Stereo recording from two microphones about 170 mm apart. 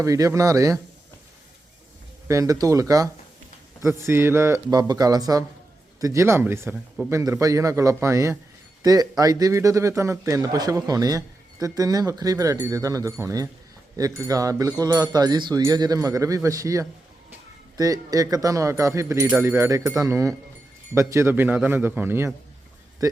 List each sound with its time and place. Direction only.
0.0 s a man's voice: 20° right (ahead or behind)
2.2 s a man's voice: 20° right (ahead or behind)